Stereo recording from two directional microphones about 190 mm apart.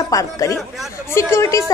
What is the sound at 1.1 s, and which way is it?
Speech, 15° left (ahead or behind).